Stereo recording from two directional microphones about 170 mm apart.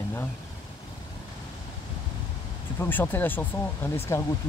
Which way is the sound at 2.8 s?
10° left (ahead or behind).